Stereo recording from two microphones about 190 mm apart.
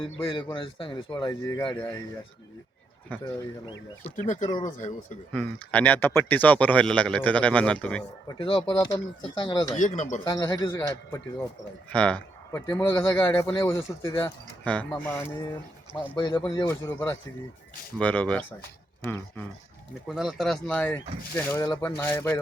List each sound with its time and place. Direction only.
0.3 s speech: 25° left (ahead or behind)
4.0 s speech: 40° left (ahead or behind)
5.3 s speech: 5° left (ahead or behind)
8.3 s speech: 25° left (ahead or behind)
9.7 s speech: 40° left (ahead or behind)
10.2 s speech: 15° left (ahead or behind)
16.1 s speech: 20° left (ahead or behind)
20.1 s speech: centre (ahead or behind)